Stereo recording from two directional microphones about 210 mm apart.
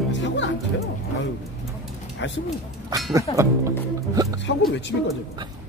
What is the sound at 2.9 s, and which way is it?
Speech, 15° right (ahead or behind).